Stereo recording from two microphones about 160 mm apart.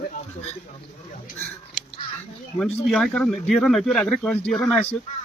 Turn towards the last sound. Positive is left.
turn(degrees=0)  # may be behind; listen again after turning